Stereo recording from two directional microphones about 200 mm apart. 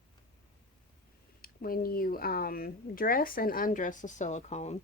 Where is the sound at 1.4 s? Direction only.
45° left (ahead or behind).